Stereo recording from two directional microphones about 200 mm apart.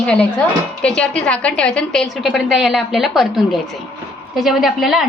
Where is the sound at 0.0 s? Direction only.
5° left (ahead or behind).